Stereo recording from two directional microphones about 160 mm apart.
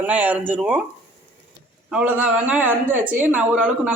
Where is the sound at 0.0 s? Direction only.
10° right (ahead or behind).